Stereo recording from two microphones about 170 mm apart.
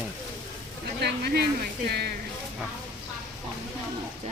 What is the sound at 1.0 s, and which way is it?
Speech, 75° right (ahead or behind).